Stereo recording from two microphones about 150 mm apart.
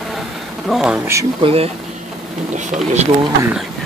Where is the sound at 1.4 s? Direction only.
40° right (ahead or behind).